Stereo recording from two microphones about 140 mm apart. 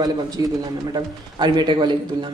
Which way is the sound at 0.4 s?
25° right (ahead or behind).